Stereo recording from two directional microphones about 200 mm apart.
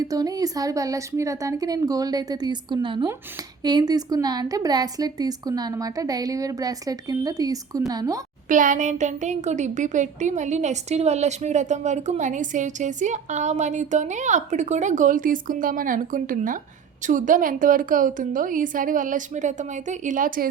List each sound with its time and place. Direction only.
0.0 s a woman's voice: 20° right (ahead or behind)
8.4 s a woman's voice: 40° right (ahead or behind)